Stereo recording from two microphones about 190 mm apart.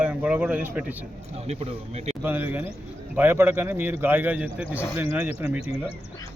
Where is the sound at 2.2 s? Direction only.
10° right (ahead or behind).